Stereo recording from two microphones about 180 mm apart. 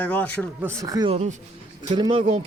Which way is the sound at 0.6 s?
20° right (ahead or behind).